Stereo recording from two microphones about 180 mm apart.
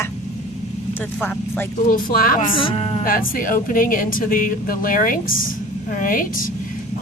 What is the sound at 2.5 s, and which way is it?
Speech, 30° left (ahead or behind).